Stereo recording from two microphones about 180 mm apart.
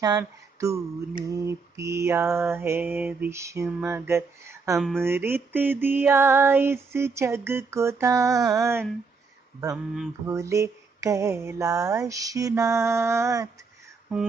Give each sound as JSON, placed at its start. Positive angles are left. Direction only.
{"t": 0.0, "sound": "female singing", "side_deg": -20}
{"t": 4.7, "sound": "speech", "side_deg": 0}
{"t": 5.0, "sound": "female singing", "side_deg": -10}
{"t": 10.2, "sound": "female singing", "side_deg": -15}